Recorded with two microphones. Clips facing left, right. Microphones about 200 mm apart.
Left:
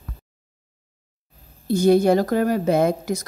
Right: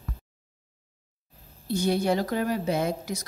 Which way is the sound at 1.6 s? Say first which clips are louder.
Left 9 dB; 45° left (ahead or behind).